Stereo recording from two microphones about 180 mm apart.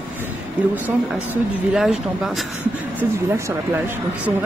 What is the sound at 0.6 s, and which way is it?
Speech, 5° right (ahead or behind).